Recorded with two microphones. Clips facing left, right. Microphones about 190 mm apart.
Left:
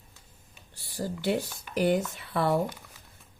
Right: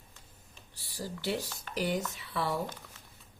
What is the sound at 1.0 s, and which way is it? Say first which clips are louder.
Speech: left 6 dB; 55° left (ahead or behind).